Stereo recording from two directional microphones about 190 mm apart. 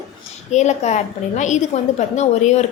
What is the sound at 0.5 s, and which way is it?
A woman's voice, 35° left (ahead or behind).